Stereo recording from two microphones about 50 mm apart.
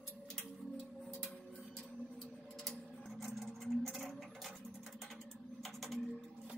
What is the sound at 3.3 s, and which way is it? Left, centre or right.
Sewing machine, centre.